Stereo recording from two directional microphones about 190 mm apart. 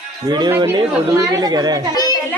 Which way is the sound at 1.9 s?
20° left (ahead or behind).